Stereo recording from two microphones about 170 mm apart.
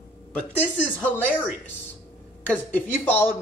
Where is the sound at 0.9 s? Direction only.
10° left (ahead or behind).